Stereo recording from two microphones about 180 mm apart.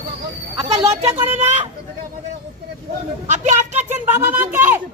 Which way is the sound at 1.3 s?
40° right (ahead or behind).